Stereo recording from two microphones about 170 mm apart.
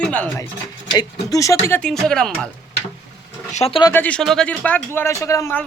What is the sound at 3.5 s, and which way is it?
Speech, 35° left (ahead or behind).